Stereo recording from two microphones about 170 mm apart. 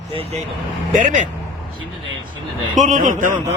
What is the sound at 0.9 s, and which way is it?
Speech, 50° right (ahead or behind).